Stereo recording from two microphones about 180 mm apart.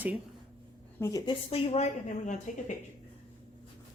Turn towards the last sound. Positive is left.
turn(degrees=40)  # may be behind; listen again after turning